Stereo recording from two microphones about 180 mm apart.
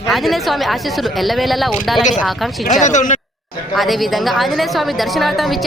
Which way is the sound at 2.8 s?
45° left (ahead or behind).